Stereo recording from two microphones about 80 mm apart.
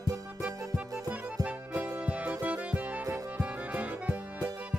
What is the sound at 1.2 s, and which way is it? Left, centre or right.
Music, centre.